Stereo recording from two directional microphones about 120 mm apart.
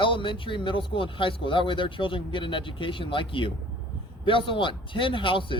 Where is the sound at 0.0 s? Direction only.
45° left (ahead or behind).